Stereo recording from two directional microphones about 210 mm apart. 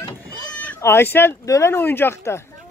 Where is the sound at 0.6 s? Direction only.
10° left (ahead or behind).